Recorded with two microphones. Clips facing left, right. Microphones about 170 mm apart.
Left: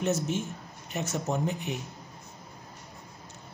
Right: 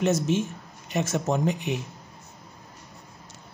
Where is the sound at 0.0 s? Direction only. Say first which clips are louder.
Right 5 dB; 90° right.